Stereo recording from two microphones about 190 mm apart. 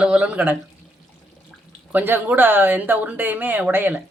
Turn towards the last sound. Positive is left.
turn(degrees=-10)  # may be behind; listen again after turning